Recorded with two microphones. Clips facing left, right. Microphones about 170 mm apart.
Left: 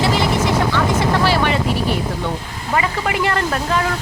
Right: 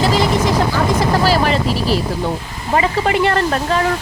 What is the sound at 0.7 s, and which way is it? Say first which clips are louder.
Speech: right 1 dB; 40° right (ahead or behind).